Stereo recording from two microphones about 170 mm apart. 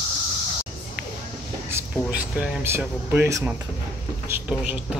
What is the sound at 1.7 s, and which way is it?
Speech, 10° right (ahead or behind).